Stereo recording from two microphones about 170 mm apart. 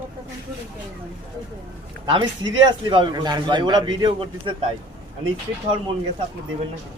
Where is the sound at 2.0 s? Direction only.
30° right (ahead or behind).